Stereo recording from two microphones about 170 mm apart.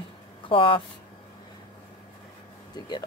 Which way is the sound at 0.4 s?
30° left (ahead or behind).